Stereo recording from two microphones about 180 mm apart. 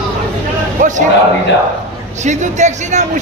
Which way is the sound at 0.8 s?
45° right (ahead or behind).